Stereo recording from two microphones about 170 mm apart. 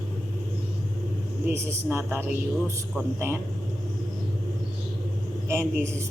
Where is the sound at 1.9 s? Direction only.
15° right (ahead or behind).